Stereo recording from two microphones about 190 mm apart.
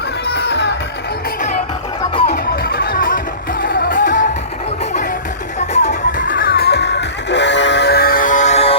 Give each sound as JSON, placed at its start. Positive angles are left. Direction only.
{"t": 0.3, "sound": "music", "side_deg": 60}
{"t": 2.2, "sound": "music", "side_deg": 55}
{"t": 5.5, "sound": "music", "side_deg": 40}